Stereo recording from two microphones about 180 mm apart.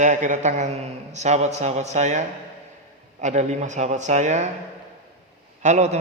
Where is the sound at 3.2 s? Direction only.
40° right (ahead or behind).